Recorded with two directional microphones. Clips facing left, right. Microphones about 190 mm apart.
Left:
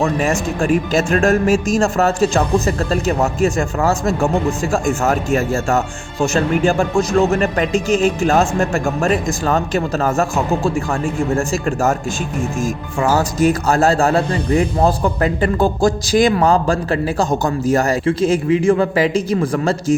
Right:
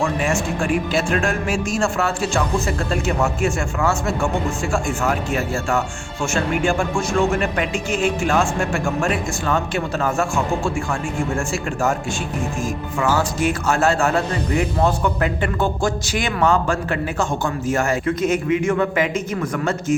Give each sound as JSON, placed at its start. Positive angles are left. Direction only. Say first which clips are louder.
{"t": 0.0, "sound": "a man's voice", "louder": "left 3 dB", "side_deg": 40}
{"t": 13.0, "sound": "a man's voice", "louder": "left 4 dB", "side_deg": 40}